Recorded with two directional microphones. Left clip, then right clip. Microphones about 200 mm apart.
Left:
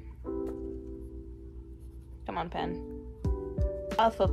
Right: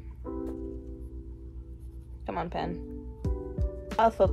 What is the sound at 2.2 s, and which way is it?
Speech, 15° left (ahead or behind).